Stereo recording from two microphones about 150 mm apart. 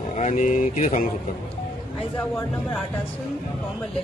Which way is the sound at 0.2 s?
55° left (ahead or behind).